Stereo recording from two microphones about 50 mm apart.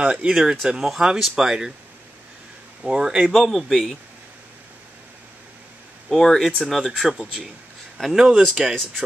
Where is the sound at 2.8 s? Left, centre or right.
Centre.